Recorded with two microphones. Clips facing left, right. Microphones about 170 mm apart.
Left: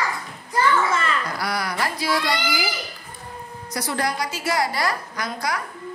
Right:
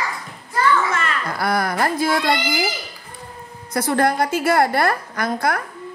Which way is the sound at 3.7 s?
55° right (ahead or behind).